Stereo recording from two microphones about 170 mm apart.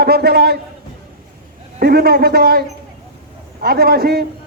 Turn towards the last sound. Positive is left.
turn(degrees=-65)  # may be behind; listen again after turning